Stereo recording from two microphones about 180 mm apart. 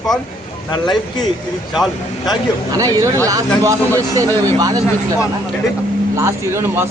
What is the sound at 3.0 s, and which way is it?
Speech, 15° right (ahead or behind).